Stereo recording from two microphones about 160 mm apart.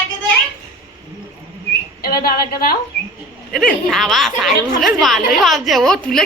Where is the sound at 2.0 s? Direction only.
70° left (ahead or behind).